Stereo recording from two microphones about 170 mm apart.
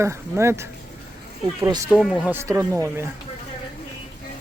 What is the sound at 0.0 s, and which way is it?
Speech, 15° right (ahead or behind).